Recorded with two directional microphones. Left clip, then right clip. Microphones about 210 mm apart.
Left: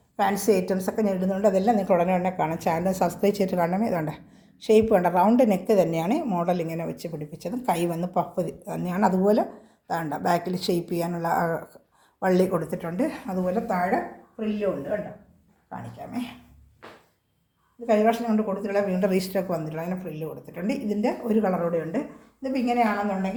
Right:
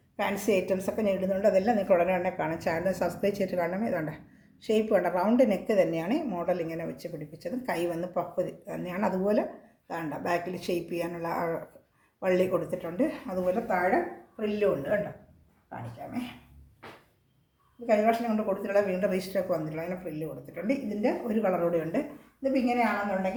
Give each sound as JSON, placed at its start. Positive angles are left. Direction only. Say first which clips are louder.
{"t": 0.2, "sound": "a woman's voice", "louder": "left 5 dB", "side_deg": 30}
{"t": 14.3, "sound": "speech", "louder": "even", "side_deg": 10}
{"t": 15.7, "sound": "a woman's voice", "louder": "left 3 dB", "side_deg": 45}
{"t": 17.8, "sound": "a woman's voice", "louder": "left 3 dB", "side_deg": 40}
{"t": 18.4, "sound": "speech", "louder": "left 1 dB", "side_deg": 25}
{"t": 19.0, "sound": "a woman's voice", "louder": "left 3 dB", "side_deg": 40}
{"t": 21.7, "sound": "speech", "louder": "left 2 dB", "side_deg": 15}
{"t": 22.5, "sound": "a woman's voice", "louder": "left 4 dB", "side_deg": 45}